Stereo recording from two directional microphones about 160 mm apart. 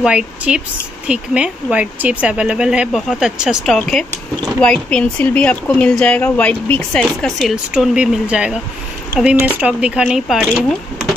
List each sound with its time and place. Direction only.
0.0 s speech: 5° right (ahead or behind)